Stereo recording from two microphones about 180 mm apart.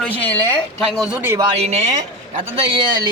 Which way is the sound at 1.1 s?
10° right (ahead or behind).